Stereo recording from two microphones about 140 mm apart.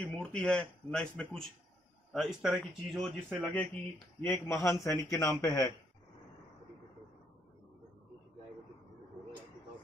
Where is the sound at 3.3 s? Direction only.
10° left (ahead or behind).